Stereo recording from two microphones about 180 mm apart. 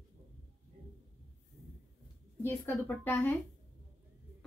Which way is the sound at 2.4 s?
15° left (ahead or behind).